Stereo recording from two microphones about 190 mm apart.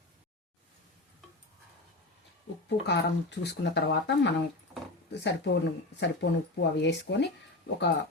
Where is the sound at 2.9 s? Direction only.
65° left (ahead or behind).